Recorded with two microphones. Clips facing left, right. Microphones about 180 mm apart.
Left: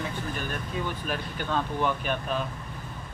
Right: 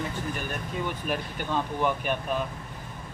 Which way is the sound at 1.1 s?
15° right (ahead or behind).